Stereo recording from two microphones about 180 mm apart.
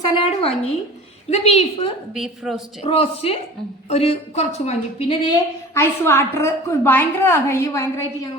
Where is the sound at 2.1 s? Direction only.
Centre (ahead or behind).